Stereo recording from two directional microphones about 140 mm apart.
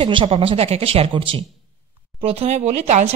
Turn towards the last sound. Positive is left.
turn(degrees=-50)  # may be behind; listen again after turning